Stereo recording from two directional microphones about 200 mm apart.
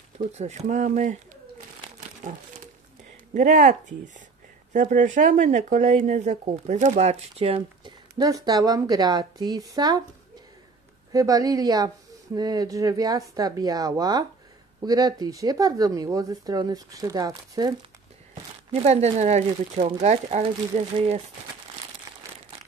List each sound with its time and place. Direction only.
0.2 s speech: 35° right (ahead or behind)
3.3 s speech: 40° right (ahead or behind)
4.7 s speech: 40° right (ahead or behind); by 10.0 s 20° right (ahead or behind)
11.1 s speech: 20° right (ahead or behind)
18.7 s speech: 30° right (ahead or behind)